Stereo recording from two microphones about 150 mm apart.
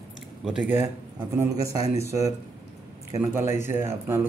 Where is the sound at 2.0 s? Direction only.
20° right (ahead or behind).